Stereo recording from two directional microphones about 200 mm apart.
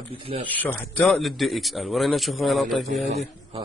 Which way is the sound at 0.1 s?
25° right (ahead or behind).